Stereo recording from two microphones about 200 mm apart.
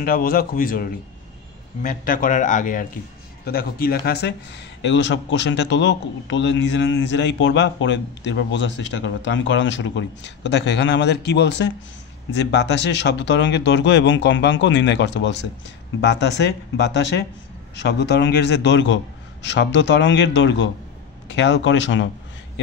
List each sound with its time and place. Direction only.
0.0 s speech: 45° left (ahead or behind)
17.8 s a man's voice: 55° left (ahead or behind)